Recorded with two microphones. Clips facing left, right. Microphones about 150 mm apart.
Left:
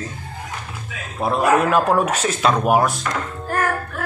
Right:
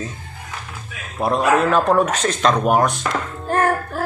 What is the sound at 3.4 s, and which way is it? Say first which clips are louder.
Music: right 4 dB; 25° right (ahead or behind).